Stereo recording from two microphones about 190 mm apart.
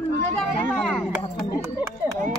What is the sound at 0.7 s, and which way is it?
Speech, 5° left (ahead or behind).